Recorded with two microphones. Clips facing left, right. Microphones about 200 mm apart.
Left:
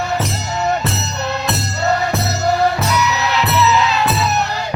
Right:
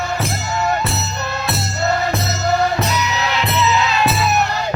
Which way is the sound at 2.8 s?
25° right (ahead or behind).